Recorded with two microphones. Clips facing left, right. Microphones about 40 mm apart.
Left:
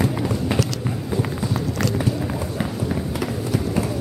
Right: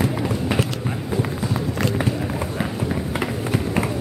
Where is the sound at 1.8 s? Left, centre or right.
Right.